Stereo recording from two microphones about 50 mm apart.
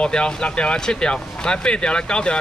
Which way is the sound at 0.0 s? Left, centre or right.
Centre.